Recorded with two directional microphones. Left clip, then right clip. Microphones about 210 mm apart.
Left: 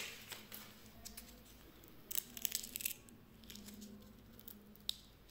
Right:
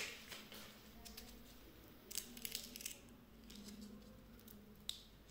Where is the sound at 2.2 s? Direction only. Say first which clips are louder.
Left 4 dB; 20° left (ahead or behind).